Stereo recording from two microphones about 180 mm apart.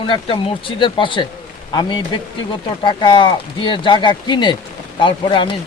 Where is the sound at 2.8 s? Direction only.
25° left (ahead or behind).